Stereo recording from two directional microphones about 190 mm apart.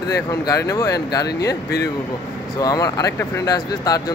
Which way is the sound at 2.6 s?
20° left (ahead or behind).